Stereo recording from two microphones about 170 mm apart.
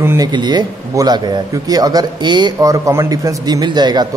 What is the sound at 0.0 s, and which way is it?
Speech, 15° right (ahead or behind).